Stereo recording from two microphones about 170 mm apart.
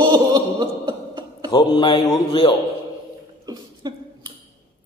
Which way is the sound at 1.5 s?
25° left (ahead or behind).